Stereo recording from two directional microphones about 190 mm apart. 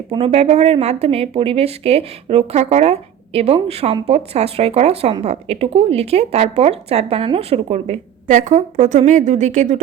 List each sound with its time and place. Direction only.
0.1 s speech: 30° right (ahead or behind)